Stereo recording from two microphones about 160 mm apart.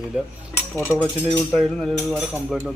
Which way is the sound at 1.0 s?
5° left (ahead or behind).